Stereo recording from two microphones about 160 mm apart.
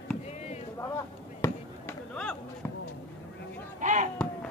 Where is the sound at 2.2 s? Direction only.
5° left (ahead or behind).